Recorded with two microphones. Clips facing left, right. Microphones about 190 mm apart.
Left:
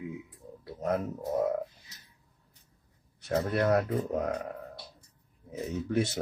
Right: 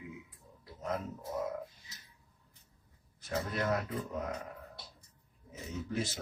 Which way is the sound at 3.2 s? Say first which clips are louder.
Left 7 dB; 70° left (ahead or behind).